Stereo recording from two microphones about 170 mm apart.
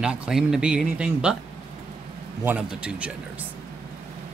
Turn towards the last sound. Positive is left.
turn(degrees=-10)  # may be behind; listen again after turning